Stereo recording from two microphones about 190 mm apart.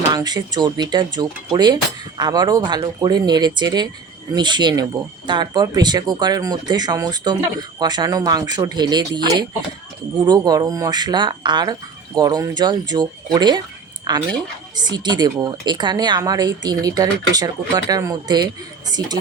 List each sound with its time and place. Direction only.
0.1 s speech: 20° right (ahead or behind)